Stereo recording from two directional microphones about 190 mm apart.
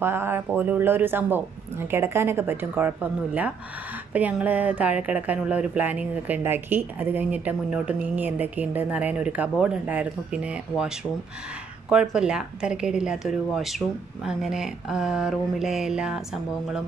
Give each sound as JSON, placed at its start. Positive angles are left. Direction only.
{"t": 0.0, "sound": "speech", "side_deg": -10}
{"t": 11.9, "sound": "speech", "side_deg": -5}